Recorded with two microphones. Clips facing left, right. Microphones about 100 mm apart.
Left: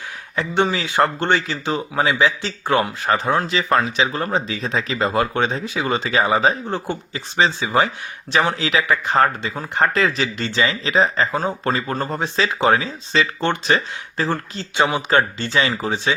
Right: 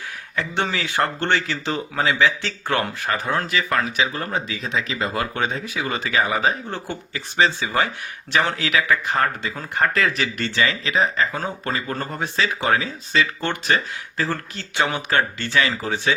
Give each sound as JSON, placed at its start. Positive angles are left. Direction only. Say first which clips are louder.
{"t": 0.3, "sound": "speech", "louder": "left 5 dB", "side_deg": 20}
{"t": 10.8, "sound": "speech", "louder": "left 3 dB", "side_deg": 30}
{"t": 11.9, "sound": "speech", "louder": "left 3 dB", "side_deg": 25}